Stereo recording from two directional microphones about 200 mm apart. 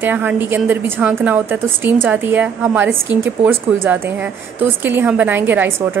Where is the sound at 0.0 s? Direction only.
10° right (ahead or behind).